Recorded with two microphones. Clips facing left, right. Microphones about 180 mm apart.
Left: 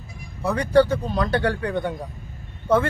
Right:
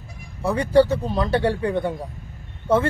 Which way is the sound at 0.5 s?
25° right (ahead or behind).